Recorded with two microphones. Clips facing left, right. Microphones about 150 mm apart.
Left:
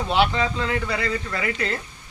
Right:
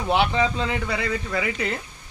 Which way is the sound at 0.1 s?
20° right (ahead or behind).